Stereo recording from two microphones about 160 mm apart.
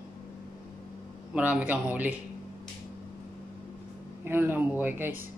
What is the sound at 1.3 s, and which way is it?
Speech, 10° right (ahead or behind).